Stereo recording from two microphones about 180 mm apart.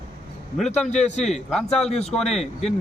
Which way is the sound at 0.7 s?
40° left (ahead or behind).